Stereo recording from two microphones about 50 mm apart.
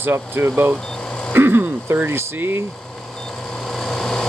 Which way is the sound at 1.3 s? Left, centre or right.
Right.